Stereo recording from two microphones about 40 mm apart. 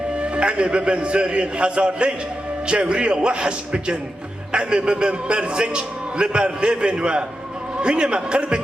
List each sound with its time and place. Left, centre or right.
0.2 s a man's voice: right